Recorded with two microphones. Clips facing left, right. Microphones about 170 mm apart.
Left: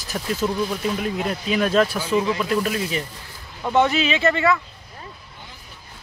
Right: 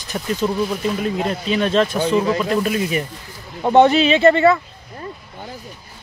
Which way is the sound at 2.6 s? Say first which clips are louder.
Right 4 dB; 5° right (ahead or behind).